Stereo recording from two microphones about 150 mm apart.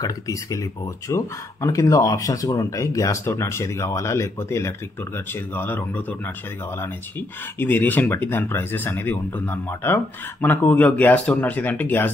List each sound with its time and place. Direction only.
0.0 s speech: 20° left (ahead or behind)